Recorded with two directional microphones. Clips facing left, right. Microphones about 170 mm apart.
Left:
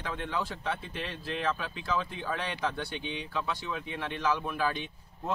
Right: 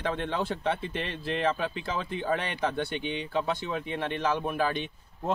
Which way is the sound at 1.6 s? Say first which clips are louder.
Right 2 dB; 25° right (ahead or behind).